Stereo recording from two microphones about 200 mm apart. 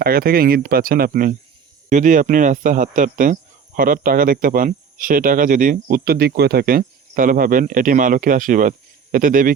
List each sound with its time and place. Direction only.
0.0 s speech: 45° right (ahead or behind)